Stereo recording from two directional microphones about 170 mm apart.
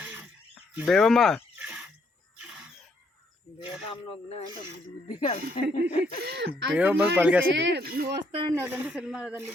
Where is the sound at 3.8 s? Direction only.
30° left (ahead or behind).